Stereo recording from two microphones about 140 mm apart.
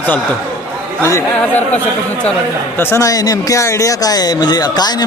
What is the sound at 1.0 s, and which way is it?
Speech, 15° left (ahead or behind).